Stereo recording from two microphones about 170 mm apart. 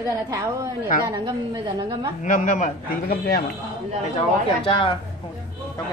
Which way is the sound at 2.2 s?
50° left (ahead or behind).